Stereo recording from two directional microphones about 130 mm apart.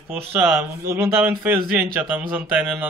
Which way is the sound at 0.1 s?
15° right (ahead or behind).